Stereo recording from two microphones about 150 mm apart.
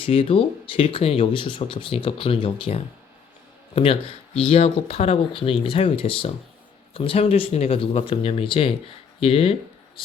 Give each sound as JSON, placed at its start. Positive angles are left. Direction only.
{"t": 0.0, "sound": "speech", "side_deg": 35}
{"t": 4.4, "sound": "speech", "side_deg": 40}